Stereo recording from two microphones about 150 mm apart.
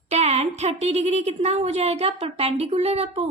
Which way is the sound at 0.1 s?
45° right (ahead or behind).